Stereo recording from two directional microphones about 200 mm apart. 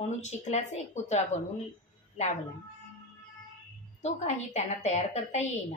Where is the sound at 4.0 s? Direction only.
35° left (ahead or behind).